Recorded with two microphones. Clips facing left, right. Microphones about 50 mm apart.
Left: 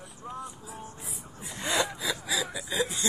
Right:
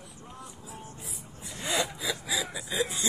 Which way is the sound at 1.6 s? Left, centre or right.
Centre.